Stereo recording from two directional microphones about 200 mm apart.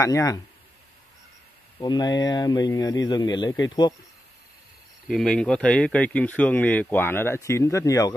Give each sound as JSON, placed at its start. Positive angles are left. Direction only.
{"t": 0.0, "sound": "speech", "side_deg": 15}
{"t": 1.8, "sound": "speech", "side_deg": 20}
{"t": 5.0, "sound": "speech", "side_deg": 0}